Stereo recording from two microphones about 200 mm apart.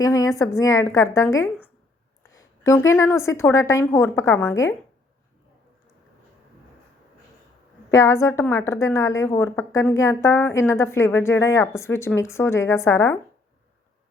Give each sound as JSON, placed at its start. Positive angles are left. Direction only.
{"t": 0.0, "sound": "a woman's voice", "side_deg": 15}
{"t": 7.9, "sound": "a woman's voice", "side_deg": 15}